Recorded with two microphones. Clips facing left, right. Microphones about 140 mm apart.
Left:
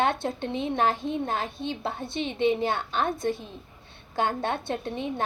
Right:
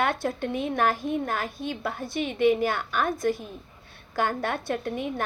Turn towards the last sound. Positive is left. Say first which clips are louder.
# right 1 dB
turn(degrees=25)  # may be behind; listen again after turning